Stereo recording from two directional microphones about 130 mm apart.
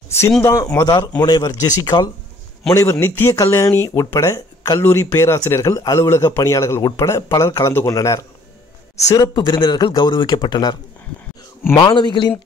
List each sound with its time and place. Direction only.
0.4 s speech: 20° left (ahead or behind)
0.7 s speech: 30° left (ahead or behind)
11.8 s speech: 35° left (ahead or behind)